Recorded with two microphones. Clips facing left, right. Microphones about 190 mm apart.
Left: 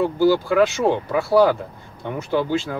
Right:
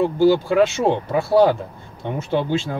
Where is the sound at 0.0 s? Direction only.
25° right (ahead or behind).